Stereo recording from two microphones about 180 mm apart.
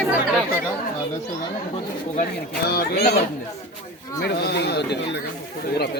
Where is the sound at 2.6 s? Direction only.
60° left (ahead or behind).